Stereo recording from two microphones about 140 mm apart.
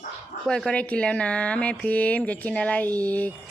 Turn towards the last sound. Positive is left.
turn(degrees=10)  # may be behind; listen again after turning